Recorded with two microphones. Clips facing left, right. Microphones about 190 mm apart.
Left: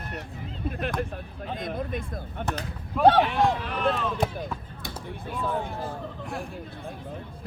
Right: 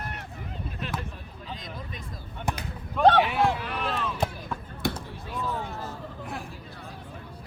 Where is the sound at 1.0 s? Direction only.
55° left (ahead or behind).